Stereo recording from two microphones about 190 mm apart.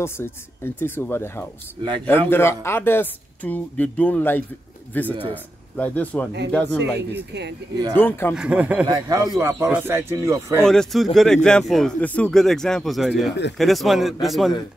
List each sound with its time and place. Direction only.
0.0 s a man's voice: 10° left (ahead or behind)
7.3 s speech: 65° right (ahead or behind)
7.9 s a man's voice: 10° left (ahead or behind)
8.4 s speech: 5° right (ahead or behind)
8.8 s a man's voice: 20° right (ahead or behind)
10.6 s speech: 5° left (ahead or behind)